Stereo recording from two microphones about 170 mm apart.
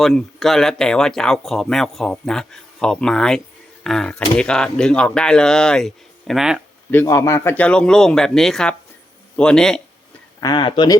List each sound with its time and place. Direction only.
0.0 s speech: centre (ahead or behind)
6.9 s speech: 15° left (ahead or behind)
10.4 s speech: 25° left (ahead or behind)